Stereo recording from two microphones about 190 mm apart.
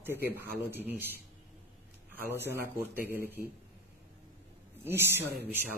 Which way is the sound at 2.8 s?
10° right (ahead or behind).